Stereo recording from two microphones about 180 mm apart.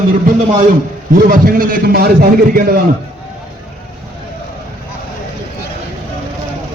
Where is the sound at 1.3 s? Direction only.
50° right (ahead or behind).